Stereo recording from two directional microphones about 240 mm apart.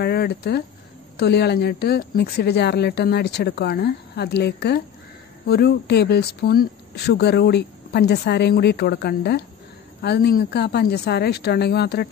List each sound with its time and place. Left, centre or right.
0.0 s a woman's voice: left